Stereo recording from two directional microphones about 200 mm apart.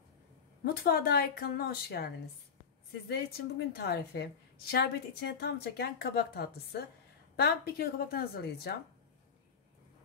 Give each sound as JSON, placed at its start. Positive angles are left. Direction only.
{"t": 0.8, "sound": "a woman's voice", "side_deg": 50}
{"t": 3.1, "sound": "a woman's voice", "side_deg": 55}